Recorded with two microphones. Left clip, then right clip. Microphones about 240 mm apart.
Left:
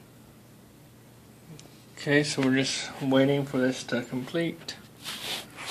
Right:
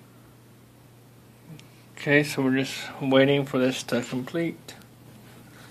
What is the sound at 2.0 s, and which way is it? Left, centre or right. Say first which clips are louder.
Speech: right 3 dB; centre.